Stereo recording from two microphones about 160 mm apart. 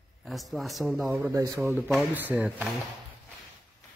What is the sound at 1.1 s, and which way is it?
Speech, 20° right (ahead or behind).